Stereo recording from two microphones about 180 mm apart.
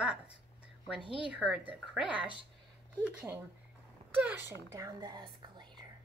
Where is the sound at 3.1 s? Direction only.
10° right (ahead or behind); by 5.7 s 25° right (ahead or behind).